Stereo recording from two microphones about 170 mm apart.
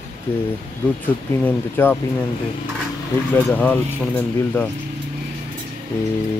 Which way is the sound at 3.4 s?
10° left (ahead or behind).